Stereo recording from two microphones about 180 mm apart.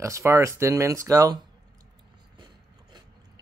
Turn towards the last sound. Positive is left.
turn(degrees=-25)  # may be behind; listen again after turning